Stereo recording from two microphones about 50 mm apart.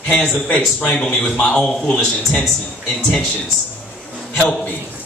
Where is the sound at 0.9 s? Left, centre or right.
Centre.